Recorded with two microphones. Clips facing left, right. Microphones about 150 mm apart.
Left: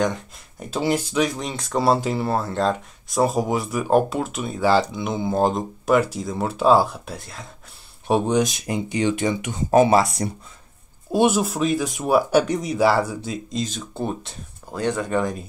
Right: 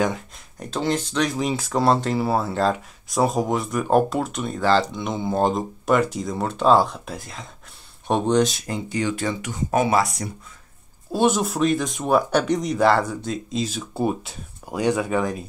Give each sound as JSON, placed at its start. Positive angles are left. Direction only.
{"t": 0.0, "sound": "a sound", "side_deg": -5}
{"t": 0.7, "sound": "speech", "side_deg": 10}
{"t": 9.7, "sound": "speech", "side_deg": 30}
{"t": 11.1, "sound": "speech", "side_deg": 10}